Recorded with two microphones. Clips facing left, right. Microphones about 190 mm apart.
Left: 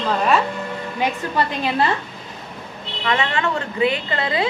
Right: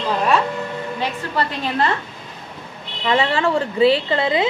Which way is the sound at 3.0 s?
30° right (ahead or behind).